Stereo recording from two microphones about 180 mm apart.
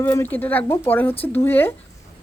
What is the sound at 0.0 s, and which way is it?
Speech, 10° left (ahead or behind).